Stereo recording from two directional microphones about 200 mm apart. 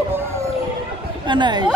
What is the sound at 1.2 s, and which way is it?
Chatter, 20° right (ahead or behind).